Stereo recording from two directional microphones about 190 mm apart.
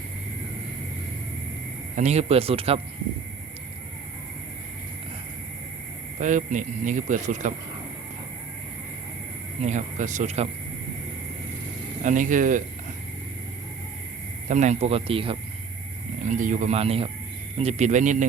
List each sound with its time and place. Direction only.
2.0 s speech: 35° right (ahead or behind)
6.1 s speech: 40° right (ahead or behind)
9.6 s speech: 40° right (ahead or behind)
12.0 s speech: 40° right (ahead or behind)
14.4 s speech: 40° right (ahead or behind)
16.3 s speech: 40° right (ahead or behind)